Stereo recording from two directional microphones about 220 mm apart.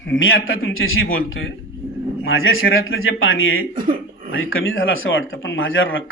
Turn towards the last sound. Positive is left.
turn(degrees=65)  # may be behind; listen again after turning